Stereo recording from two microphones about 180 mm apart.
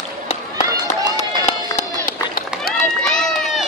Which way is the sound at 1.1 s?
40° left (ahead or behind).